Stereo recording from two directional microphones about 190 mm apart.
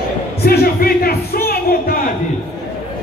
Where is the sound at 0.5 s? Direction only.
55° left (ahead or behind).